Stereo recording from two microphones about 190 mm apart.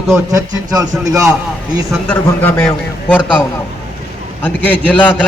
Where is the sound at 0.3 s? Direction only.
20° right (ahead or behind).